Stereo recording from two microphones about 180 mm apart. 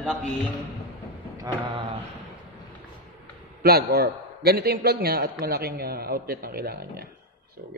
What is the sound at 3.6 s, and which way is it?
A man's voice, 60° right (ahead or behind).